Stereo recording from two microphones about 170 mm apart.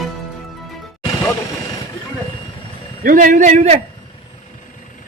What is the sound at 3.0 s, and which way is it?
Speech, 55° right (ahead or behind).